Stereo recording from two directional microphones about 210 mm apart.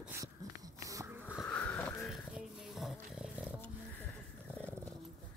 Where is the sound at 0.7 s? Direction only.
15° right (ahead or behind).